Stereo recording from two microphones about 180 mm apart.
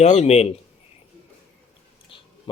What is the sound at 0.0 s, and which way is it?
Speech, 35° left (ahead or behind).